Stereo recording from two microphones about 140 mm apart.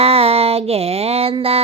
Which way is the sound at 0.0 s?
45° right (ahead or behind).